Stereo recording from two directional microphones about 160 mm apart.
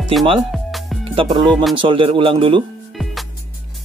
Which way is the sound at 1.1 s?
30° right (ahead or behind).